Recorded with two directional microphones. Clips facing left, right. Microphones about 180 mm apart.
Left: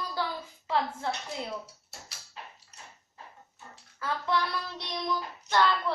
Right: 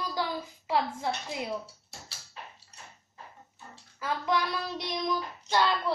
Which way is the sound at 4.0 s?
15° right (ahead or behind).